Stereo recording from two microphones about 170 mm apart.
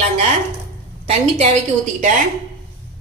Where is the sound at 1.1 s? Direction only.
40° right (ahead or behind).